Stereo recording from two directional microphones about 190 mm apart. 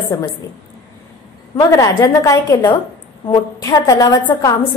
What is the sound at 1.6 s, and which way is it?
A woman's voice, 20° left (ahead or behind).